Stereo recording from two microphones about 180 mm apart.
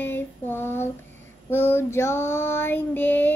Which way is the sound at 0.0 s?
10° left (ahead or behind).